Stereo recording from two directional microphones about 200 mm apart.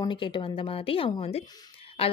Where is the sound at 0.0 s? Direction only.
25° left (ahead or behind).